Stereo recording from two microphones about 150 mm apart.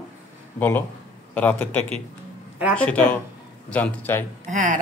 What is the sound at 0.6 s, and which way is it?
Speech, 15° left (ahead or behind).